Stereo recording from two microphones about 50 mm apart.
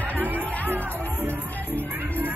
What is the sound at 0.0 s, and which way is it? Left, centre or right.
Music, right.